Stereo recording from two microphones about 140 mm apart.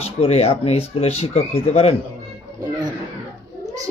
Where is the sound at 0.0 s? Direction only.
45° left (ahead or behind).